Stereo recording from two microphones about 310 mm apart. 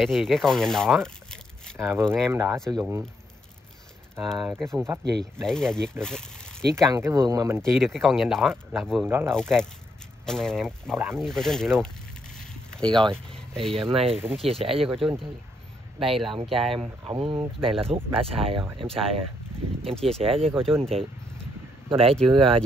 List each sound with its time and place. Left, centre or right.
0.0 s speech: centre
4.2 s speech: centre
6.7 s speech: centre
12.4 s a sound: centre
13.7 s speech: centre
13.9 s speech: centre
14.9 s speech: centre
16.7 s speech: centre
19.9 s speech: centre
20.3 s speech: centre
20.6 s speech: centre
21.8 s speech: centre